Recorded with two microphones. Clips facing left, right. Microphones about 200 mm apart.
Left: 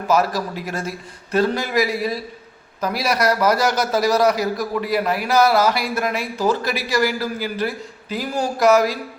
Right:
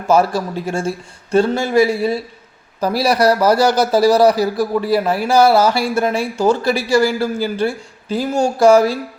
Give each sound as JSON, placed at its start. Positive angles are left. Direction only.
{"t": 0.1, "sound": "a man's voice", "side_deg": -30}